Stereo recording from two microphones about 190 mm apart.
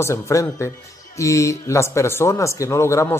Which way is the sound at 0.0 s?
15° left (ahead or behind).